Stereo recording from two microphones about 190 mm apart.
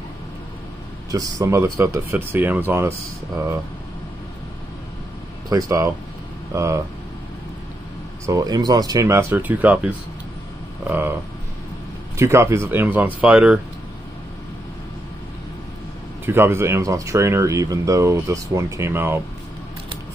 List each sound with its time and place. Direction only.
1.1 s speech: 15° right (ahead or behind)
5.5 s speech: 15° right (ahead or behind)
8.3 s speech: 20° right (ahead or behind)
12.2 s speech: 15° right (ahead or behind)
16.3 s speech: 10° right (ahead or behind)